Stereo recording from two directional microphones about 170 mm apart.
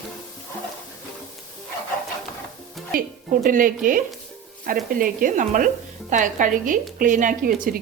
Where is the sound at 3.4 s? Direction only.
55° right (ahead or behind).